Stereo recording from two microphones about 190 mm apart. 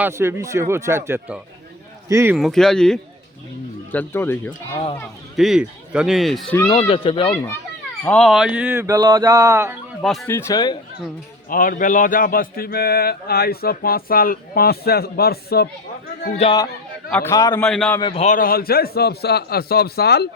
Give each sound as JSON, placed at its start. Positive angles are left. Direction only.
{"t": 0.0, "sound": "speech", "side_deg": -15}
{"t": 2.3, "sound": "speech", "side_deg": 0}
{"t": 5.4, "sound": "speech", "side_deg": -5}
{"t": 6.7, "sound": "speech", "side_deg": 30}
{"t": 8.0, "sound": "speech", "side_deg": 5}
{"t": 8.3, "sound": "speech", "side_deg": -5}
{"t": 10.0, "sound": "speech", "side_deg": 0}
{"t": 10.2, "sound": "speech", "side_deg": 15}
{"t": 11.4, "sound": "speech", "side_deg": 45}
{"t": 16.4, "sound": "speech", "side_deg": 25}
{"t": 17.1, "sound": "speech", "side_deg": 15}
{"t": 17.6, "sound": "speech", "side_deg": 5}
{"t": 18.0, "sound": "speech", "side_deg": 35}